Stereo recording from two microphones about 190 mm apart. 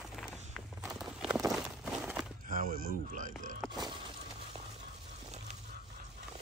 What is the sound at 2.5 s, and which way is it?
Speech, 50° right (ahead or behind).